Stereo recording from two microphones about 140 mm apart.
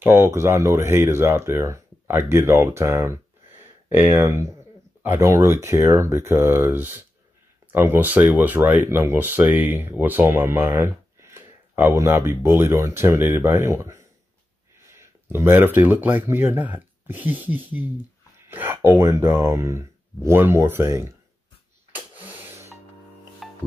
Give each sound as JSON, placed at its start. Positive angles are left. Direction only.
{"t": 0.0, "sound": "speech", "side_deg": -15}
{"t": 21.9, "sound": "a sound", "side_deg": -10}
{"t": 23.4, "sound": "music", "side_deg": 0}